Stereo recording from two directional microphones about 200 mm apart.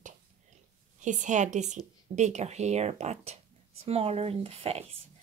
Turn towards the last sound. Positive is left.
turn(degrees=-30)  # may be behind; listen again after turning